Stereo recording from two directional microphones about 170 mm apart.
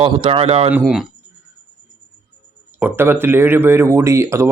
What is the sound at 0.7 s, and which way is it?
Speech, 5° right (ahead or behind).